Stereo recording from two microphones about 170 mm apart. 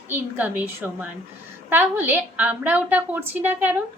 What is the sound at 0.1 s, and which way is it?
A woman's voice, 10° right (ahead or behind).